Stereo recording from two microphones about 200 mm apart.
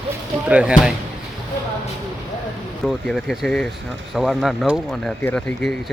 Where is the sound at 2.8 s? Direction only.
Centre (ahead or behind).